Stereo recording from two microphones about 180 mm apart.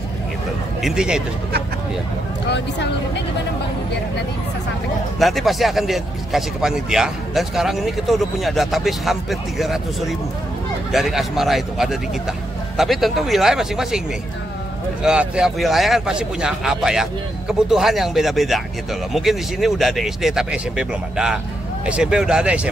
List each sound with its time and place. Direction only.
0.8 s speech: 5° right (ahead or behind)
2.4 s speech: 70° left (ahead or behind)
5.2 s speech: centre (ahead or behind)
15.0 s speech: 5° right (ahead or behind)